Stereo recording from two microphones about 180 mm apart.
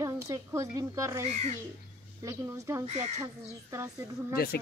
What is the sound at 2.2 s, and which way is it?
Speech, 15° right (ahead or behind).